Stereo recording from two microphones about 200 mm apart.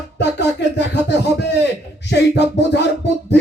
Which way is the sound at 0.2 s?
60° left (ahead or behind).